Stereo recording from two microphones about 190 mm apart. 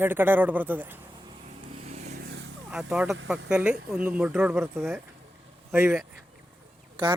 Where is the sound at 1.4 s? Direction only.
35° right (ahead or behind).